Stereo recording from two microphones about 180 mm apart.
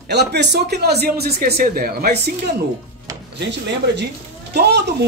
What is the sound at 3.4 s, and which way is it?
Speech, 75° right (ahead or behind).